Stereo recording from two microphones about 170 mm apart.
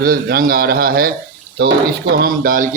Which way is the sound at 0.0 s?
60° right (ahead or behind).